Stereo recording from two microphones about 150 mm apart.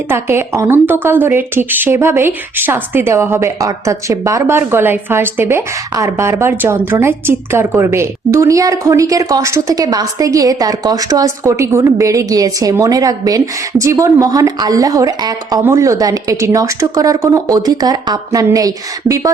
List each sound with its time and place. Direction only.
0.1 s speech: 15° right (ahead or behind)